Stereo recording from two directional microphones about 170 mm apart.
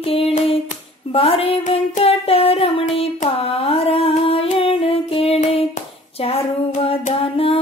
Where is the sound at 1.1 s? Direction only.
35° left (ahead or behind).